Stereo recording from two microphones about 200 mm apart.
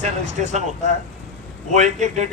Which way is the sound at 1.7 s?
35° right (ahead or behind).